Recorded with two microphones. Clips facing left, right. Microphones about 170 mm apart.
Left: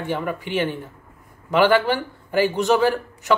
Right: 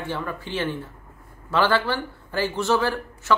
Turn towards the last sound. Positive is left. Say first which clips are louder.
# left 3 dB
turn(degrees=15)  # may be behind; listen again after turning